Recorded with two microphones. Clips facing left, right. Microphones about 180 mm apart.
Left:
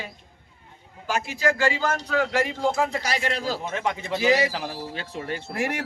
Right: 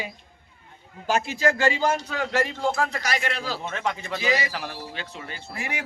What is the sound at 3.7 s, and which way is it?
Speech, 15° left (ahead or behind).